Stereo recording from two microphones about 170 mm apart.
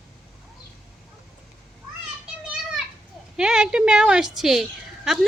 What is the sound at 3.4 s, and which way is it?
A woman's voice, 5° right (ahead or behind).